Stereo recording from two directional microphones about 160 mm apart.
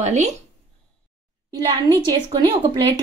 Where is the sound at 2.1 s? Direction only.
25° right (ahead or behind).